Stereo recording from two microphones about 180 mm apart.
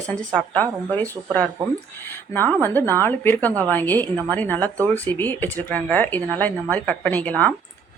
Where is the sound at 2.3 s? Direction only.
10° left (ahead or behind).